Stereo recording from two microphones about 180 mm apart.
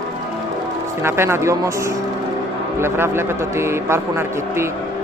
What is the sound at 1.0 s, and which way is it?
Speech, 15° right (ahead or behind).